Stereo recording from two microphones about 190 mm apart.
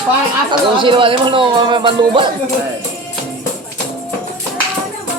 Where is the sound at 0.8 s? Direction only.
25° right (ahead or behind).